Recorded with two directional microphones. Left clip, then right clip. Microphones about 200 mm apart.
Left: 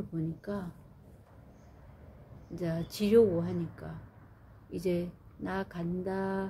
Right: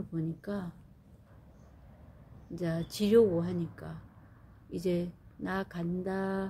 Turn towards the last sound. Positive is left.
turn(degrees=-25)  # may be behind; listen again after turning